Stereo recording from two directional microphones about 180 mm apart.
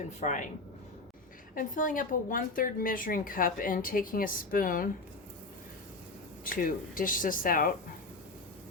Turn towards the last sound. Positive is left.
turn(degrees=50)  # may be behind; listen again after turning